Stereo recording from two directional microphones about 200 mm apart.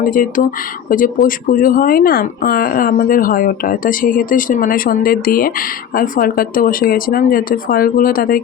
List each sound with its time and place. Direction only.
0.0 s speech: 45° left (ahead or behind)